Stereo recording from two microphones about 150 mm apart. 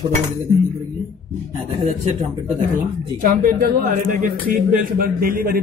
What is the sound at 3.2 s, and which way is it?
A man's voice, 65° right (ahead or behind).